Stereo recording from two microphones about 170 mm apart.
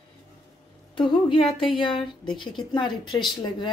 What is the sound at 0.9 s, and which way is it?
Speech, 30° left (ahead or behind).